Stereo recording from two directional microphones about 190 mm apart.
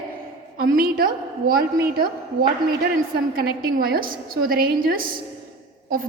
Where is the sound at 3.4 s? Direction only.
50° right (ahead or behind).